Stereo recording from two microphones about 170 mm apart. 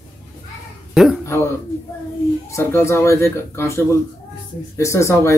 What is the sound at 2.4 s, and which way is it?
Speech, 15° left (ahead or behind).